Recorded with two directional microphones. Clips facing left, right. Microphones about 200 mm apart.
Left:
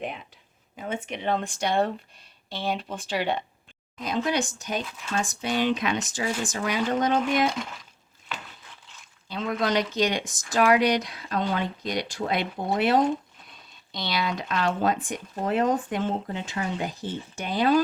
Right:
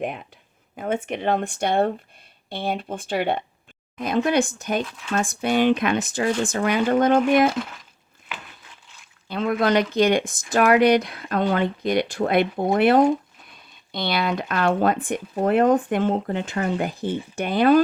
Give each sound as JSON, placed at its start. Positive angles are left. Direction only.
{"t": 0.0, "sound": "speech", "side_deg": -55}
{"t": 9.3, "sound": "speech", "side_deg": -55}